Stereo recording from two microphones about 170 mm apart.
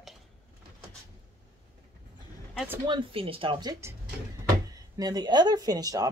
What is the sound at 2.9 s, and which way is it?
Speech, 30° right (ahead or behind).